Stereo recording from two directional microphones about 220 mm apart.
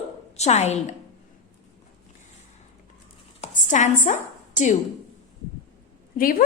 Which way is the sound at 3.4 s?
35° left (ahead or behind).